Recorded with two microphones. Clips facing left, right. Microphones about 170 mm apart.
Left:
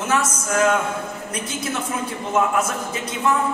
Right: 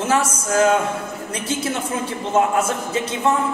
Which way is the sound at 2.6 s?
30° right (ahead or behind).